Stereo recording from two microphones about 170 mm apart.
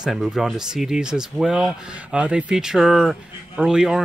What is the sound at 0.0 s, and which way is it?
Speech, 5° right (ahead or behind).